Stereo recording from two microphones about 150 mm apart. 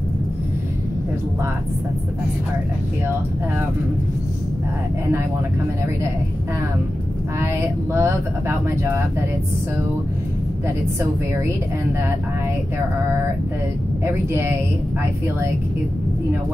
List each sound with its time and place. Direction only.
7.3 s speech: 15° right (ahead or behind)
14.0 s speech: 15° right (ahead or behind)